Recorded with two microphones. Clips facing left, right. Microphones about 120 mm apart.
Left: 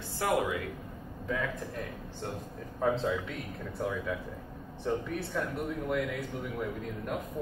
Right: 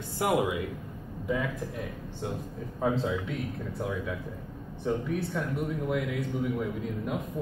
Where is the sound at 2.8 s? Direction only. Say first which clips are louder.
Right 1 dB; 5° right (ahead or behind).